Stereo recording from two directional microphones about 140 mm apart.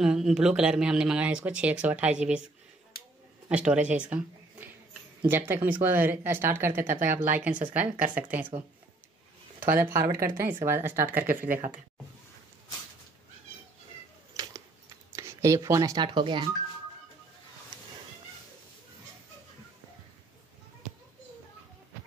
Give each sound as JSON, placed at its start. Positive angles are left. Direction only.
{"t": 0.0, "sound": "speech", "side_deg": -5}
{"t": 9.8, "sound": "speech", "side_deg": -20}
{"t": 11.2, "sound": "speech", "side_deg": -85}
{"t": 14.3, "sound": "a sound", "side_deg": -25}
{"t": 15.1, "sound": "speech", "side_deg": -20}